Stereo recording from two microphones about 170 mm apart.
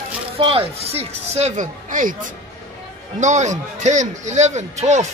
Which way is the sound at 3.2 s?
45° right (ahead or behind).